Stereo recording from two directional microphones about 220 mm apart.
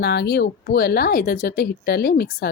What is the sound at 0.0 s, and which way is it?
Speech, 50° left (ahead or behind).